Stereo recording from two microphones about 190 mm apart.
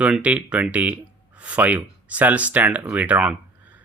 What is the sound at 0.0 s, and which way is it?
Speech, 5° right (ahead or behind).